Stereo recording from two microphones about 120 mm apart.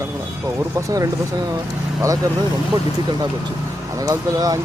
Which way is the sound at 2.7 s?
35° right (ahead or behind).